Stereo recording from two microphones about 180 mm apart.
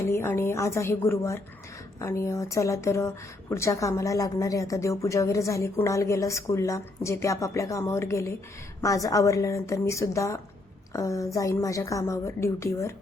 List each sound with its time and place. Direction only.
0.0 s a woman's voice: 15° left (ahead or behind)